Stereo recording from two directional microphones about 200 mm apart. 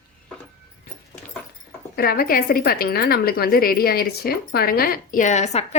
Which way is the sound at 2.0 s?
50° left (ahead or behind).